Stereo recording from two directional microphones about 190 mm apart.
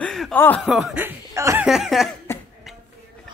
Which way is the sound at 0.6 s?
Centre (ahead or behind).